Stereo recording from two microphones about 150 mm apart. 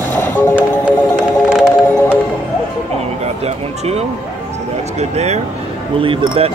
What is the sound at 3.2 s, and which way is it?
Speech, 45° right (ahead or behind).